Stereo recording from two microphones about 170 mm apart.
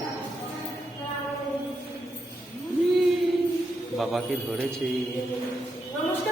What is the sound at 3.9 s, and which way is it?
Speech, centre (ahead or behind).